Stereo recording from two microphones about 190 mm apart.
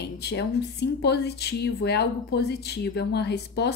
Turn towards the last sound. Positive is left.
turn(degrees=60)  # may be behind; listen again after turning